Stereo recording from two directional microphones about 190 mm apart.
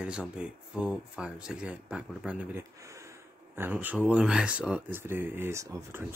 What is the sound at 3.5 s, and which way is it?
Speech, 10° right (ahead or behind).